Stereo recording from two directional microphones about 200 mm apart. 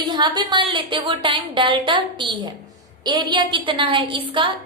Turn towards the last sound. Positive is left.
turn(degrees=-25)  # may be behind; listen again after turning